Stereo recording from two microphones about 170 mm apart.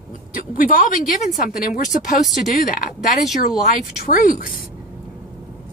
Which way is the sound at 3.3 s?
55° left (ahead or behind).